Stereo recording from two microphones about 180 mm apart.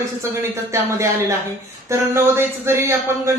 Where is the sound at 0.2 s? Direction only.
15° right (ahead or behind).